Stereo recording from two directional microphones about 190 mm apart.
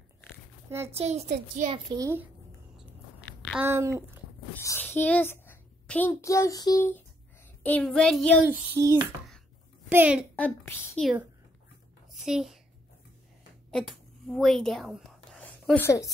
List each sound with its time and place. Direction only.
0.7 s a child's voice: 15° right (ahead or behind)
0.9 s a child's voice: 35° right (ahead or behind)
1.7 s a child's voice: 20° right (ahead or behind)
3.5 s a child's voice: 10° right (ahead or behind)
4.6 s a child's voice: 10° left (ahead or behind)
7.6 s child singing: 5° left (ahead or behind)
8.5 s a child's voice: 15° right (ahead or behind)
10.3 s a woman's voice: 10° left (ahead or behind)
12.1 s a sound: centre (ahead or behind)
13.7 s speech: centre (ahead or behind)